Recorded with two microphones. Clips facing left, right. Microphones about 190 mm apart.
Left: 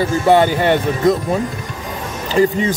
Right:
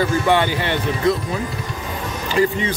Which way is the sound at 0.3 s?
45° left (ahead or behind).